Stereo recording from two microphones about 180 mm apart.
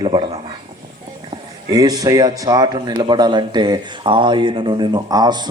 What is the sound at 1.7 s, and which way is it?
A man's voice, 20° right (ahead or behind).